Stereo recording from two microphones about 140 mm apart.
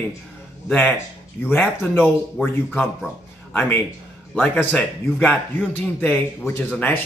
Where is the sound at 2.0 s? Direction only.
Centre (ahead or behind).